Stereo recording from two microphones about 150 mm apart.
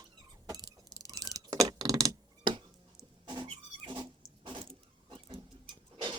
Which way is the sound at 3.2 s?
30° right (ahead or behind).